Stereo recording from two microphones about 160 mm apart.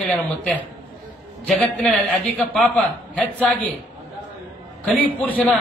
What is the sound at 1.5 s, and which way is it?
A man's voice, 10° left (ahead or behind).